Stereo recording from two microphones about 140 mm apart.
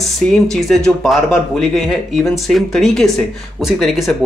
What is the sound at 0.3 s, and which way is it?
Speech, centre (ahead or behind).